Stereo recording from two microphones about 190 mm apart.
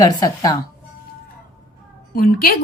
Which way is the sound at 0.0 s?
20° left (ahead or behind).